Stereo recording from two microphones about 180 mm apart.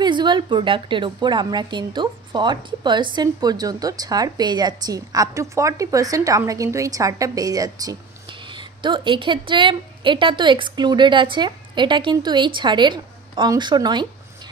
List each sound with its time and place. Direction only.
0.0 s a woman's voice: 25° right (ahead or behind)